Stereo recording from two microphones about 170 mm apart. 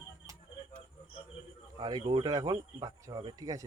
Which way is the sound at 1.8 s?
25° right (ahead or behind).